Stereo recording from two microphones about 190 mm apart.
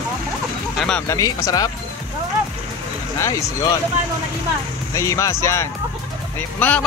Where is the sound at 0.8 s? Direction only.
5° left (ahead or behind).